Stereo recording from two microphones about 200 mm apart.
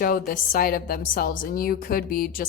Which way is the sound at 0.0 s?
45° left (ahead or behind).